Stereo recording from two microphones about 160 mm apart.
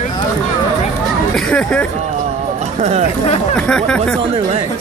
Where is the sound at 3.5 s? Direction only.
5° left (ahead or behind).